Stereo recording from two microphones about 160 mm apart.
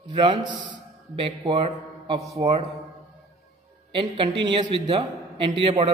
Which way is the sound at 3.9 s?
30° right (ahead or behind).